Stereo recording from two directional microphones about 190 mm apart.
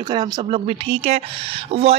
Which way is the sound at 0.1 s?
25° right (ahead or behind).